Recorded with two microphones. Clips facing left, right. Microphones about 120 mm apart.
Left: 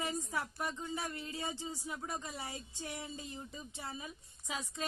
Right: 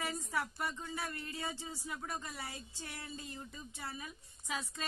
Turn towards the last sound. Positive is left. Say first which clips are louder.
# left 1 dB
turn(degrees=20)  # may be behind; listen again after turning